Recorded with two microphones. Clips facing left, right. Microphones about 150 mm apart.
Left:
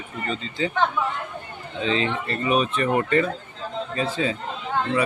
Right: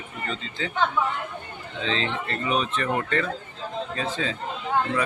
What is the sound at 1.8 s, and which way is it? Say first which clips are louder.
Speech: left 4 dB; 10° left (ahead or behind).